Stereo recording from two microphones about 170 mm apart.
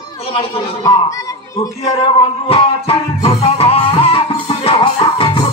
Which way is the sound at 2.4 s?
35° left (ahead or behind).